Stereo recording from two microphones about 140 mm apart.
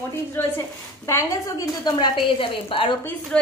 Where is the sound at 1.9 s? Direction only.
35° left (ahead or behind).